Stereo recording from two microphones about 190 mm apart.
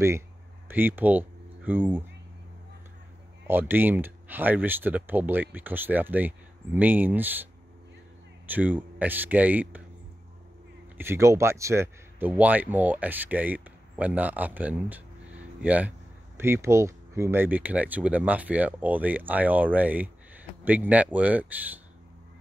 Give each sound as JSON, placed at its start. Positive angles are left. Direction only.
{"t": 0.7, "sound": "speech", "side_deg": -10}
{"t": 3.4, "sound": "speech", "side_deg": -10}
{"t": 8.5, "sound": "speech", "side_deg": -10}
{"t": 11.0, "sound": "speech", "side_deg": -15}